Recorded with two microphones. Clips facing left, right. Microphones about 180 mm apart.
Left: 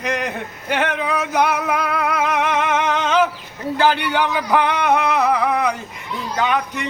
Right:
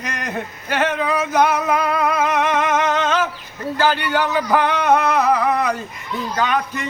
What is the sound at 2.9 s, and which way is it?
A man's voice, 15° left (ahead or behind).